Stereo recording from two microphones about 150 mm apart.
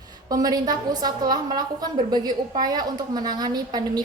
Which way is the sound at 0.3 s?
25° right (ahead or behind).